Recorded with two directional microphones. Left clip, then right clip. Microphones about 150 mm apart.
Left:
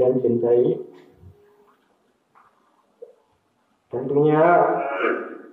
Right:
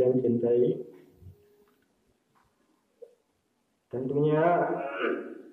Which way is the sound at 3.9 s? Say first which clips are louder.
Left 8 dB; 5° left (ahead or behind).